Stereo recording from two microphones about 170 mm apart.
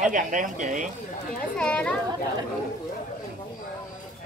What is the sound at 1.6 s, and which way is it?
Speech, 5° left (ahead or behind).